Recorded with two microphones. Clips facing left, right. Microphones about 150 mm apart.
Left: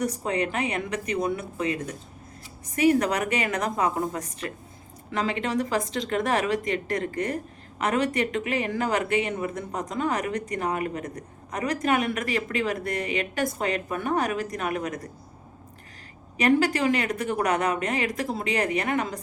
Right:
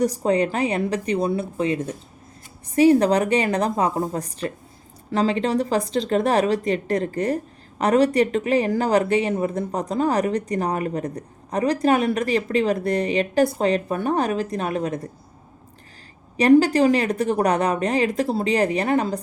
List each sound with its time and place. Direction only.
0.0 s a woman's voice: 35° right (ahead or behind)
16.4 s a woman's voice: 35° right (ahead or behind)